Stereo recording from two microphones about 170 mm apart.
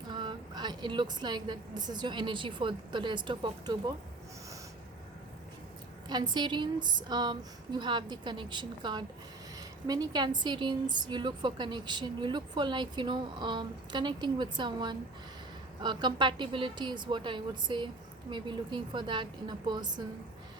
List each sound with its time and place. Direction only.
0.1 s a woman's voice: 25° right (ahead or behind)
6.1 s a woman's voice: 25° right (ahead or behind)